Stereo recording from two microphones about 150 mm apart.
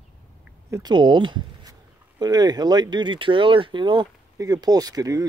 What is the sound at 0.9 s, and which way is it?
Speech, 30° right (ahead or behind).